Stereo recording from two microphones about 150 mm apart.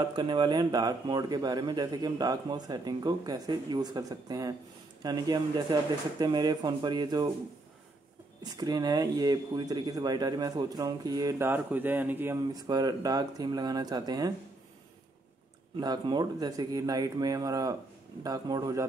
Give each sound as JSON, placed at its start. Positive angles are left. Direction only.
{"t": 0.1, "sound": "speech", "side_deg": -30}
{"t": 8.4, "sound": "speech", "side_deg": -25}
{"t": 12.5, "sound": "speech", "side_deg": -25}
{"t": 15.8, "sound": "speech", "side_deg": -25}